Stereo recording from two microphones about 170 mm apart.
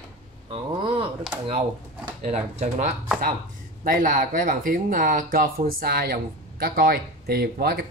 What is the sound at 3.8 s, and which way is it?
Speech, 55° right (ahead or behind).